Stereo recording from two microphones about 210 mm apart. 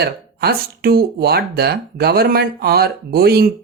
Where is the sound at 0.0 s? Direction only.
50° right (ahead or behind).